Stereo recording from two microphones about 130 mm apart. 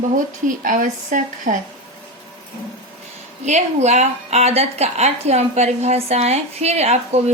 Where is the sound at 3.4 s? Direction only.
60° right (ahead or behind).